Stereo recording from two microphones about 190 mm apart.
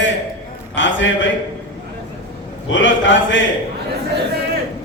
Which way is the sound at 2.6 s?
75° left (ahead or behind).